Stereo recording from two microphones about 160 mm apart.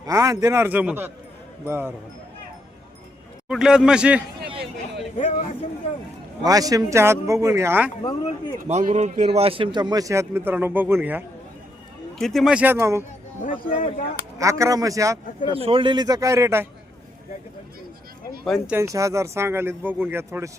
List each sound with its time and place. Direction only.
0.0 s speech: 20° right (ahead or behind)
3.5 s a man's voice: 5° right (ahead or behind)
5.1 s speech: 50° left (ahead or behind)
6.4 s speech: 20° right (ahead or behind)
8.0 s speech: 25° left (ahead or behind)
8.6 s speech: 45° right (ahead or behind); by 11.2 s 10° right (ahead or behind)
12.2 s speech: centre (ahead or behind); by 13.1 s 15° right (ahead or behind)
13.4 s speech: 55° left (ahead or behind)
14.3 s speech: 20° right (ahead or behind)
15.4 s speech: 35° right (ahead or behind); by 16.6 s 15° right (ahead or behind)
18.7 s speech: 20° right (ahead or behind)